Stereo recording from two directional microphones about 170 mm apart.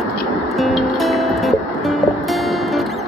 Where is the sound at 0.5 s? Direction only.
Centre (ahead or behind).